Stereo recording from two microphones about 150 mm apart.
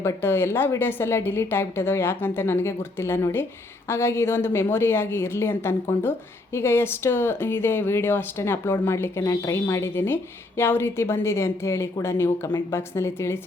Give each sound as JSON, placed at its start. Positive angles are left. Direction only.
{"t": 0.0, "sound": "a woman's voice", "side_deg": 15}